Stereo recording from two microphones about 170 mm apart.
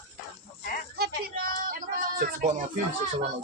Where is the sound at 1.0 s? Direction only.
60° right (ahead or behind).